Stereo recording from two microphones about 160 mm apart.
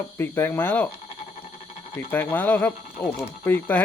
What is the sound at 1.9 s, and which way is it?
Speech, 15° left (ahead or behind).